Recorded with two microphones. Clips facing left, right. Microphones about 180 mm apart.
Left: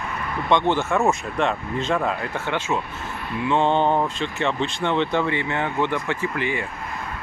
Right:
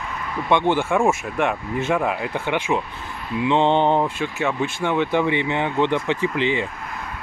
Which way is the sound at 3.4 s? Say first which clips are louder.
Right 2 dB; 20° right (ahead or behind).